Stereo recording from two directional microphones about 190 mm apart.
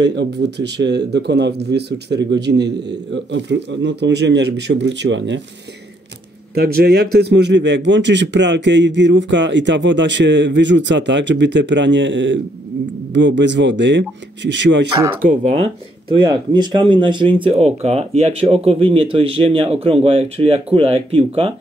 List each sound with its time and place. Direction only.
0.0 s speech: 65° right (ahead or behind)
6.5 s a man's voice: 55° right (ahead or behind)
15.2 s speech: 35° right (ahead or behind)